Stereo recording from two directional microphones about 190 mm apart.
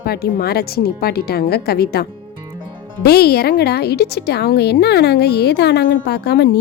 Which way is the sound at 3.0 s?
55° left (ahead or behind).